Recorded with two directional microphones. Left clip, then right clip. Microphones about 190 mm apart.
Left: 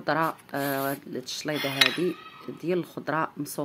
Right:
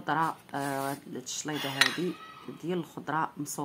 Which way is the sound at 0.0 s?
20° left (ahead or behind).